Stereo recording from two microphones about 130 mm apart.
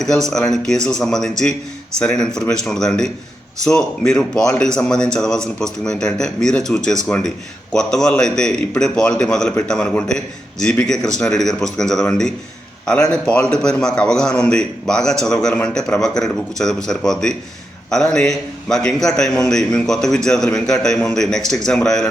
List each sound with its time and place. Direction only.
0.0 s a man's voice: 5° left (ahead or behind)